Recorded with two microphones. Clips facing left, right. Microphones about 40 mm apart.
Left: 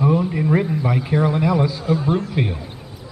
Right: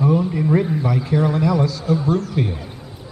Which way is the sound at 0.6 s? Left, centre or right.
Centre.